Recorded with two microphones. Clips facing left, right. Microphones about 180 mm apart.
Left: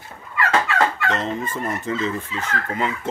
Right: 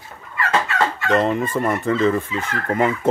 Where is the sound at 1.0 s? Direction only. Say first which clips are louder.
Right 6 dB; 60° right (ahead or behind).